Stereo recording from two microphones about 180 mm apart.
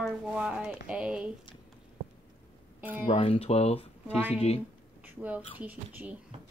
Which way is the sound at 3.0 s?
30° left (ahead or behind).